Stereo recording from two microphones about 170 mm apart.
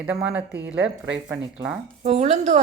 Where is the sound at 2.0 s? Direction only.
40° right (ahead or behind).